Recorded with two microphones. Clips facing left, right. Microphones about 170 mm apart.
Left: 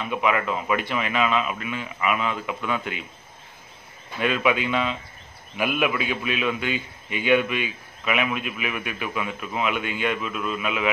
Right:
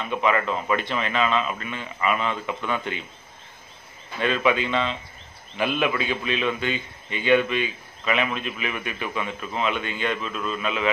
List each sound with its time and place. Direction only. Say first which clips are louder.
0.0 s a man's voice: right 1 dB; 10° left (ahead or behind)
4.2 s a man's voice: even; 10° left (ahead or behind)